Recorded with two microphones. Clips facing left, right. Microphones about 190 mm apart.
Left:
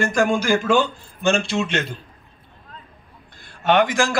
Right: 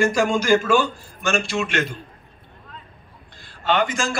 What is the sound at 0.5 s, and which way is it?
A man's voice, 20° left (ahead or behind).